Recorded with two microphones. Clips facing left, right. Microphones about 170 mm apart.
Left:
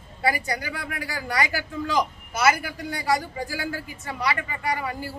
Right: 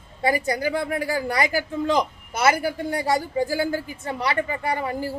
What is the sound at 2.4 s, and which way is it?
A woman's voice, 30° right (ahead or behind).